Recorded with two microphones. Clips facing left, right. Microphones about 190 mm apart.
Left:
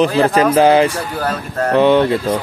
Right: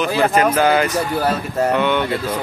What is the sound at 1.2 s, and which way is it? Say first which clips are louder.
Speech: left 2 dB; 10° right (ahead or behind).